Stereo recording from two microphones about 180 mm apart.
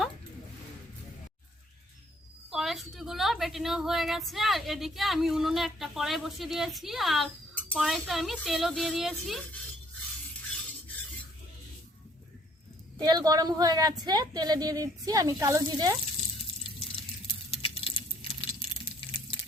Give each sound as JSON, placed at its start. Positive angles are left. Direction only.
{"t": 2.5, "sound": "a woman's voice", "side_deg": 0}
{"t": 13.0, "sound": "a woman's voice", "side_deg": -20}
{"t": 17.2, "sound": "a sound", "side_deg": 30}